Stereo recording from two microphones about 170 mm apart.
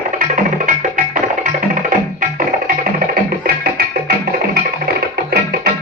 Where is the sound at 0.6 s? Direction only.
50° right (ahead or behind).